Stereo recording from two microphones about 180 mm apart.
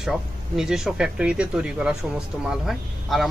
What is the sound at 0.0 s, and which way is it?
Speech, centre (ahead or behind).